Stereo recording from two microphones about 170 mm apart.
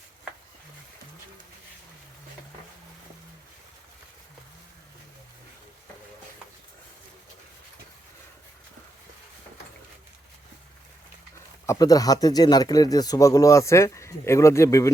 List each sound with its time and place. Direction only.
11.6 s speech: 20° left (ahead or behind)